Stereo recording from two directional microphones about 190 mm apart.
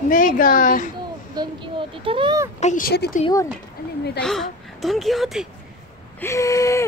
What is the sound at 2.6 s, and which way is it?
Speech, 45° left (ahead or behind).